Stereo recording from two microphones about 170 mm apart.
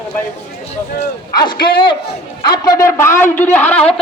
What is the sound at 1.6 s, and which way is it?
A man's voice, 30° left (ahead or behind).